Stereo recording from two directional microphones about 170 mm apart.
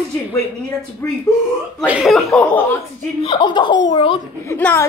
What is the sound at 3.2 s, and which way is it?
Speech, 30° left (ahead or behind).